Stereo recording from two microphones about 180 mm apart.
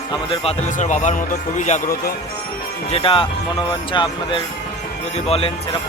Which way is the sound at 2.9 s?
30° left (ahead or behind).